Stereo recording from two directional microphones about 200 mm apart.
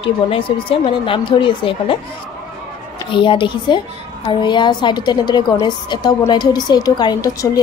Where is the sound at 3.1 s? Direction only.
25° left (ahead or behind).